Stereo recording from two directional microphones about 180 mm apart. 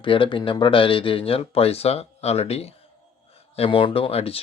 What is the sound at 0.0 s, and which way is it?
Speech, 30° left (ahead or behind).